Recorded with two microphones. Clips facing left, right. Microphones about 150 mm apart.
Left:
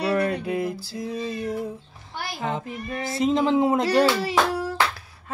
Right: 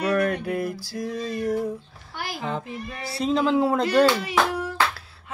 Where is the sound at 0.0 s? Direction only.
25° left (ahead or behind).